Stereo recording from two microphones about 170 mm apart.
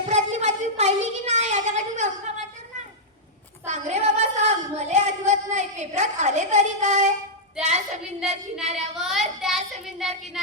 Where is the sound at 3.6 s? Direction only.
40° right (ahead or behind).